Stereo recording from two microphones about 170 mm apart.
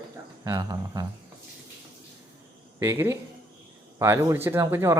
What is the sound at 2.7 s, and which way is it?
Speech, 15° right (ahead or behind).